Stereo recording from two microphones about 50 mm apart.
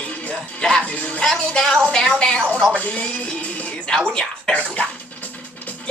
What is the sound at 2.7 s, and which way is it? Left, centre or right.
Speech, left.